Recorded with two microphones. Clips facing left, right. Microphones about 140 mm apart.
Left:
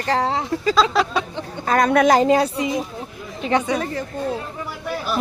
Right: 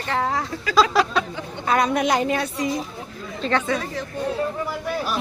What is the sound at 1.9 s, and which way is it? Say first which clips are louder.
Speech: left 6 dB; 60° left (ahead or behind).